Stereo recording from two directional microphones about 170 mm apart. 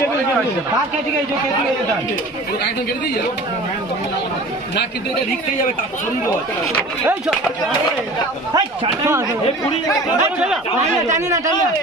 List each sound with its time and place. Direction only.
8.5 s speech: 20° right (ahead or behind)
10.2 s speech: 5° right (ahead or behind)
11.1 s speech: 15° right (ahead or behind)